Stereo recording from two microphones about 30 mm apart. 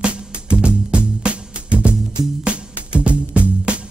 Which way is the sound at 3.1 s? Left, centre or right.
Right.